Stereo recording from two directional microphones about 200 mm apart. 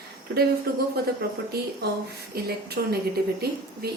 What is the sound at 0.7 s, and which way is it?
Speech, 50° right (ahead or behind).